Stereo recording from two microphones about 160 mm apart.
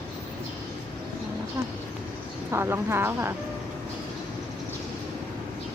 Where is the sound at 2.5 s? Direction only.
15° right (ahead or behind).